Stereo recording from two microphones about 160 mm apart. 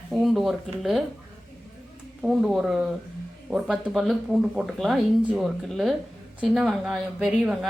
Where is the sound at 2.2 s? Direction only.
Centre (ahead or behind).